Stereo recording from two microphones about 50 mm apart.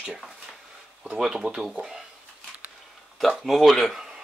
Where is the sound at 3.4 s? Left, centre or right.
Centre.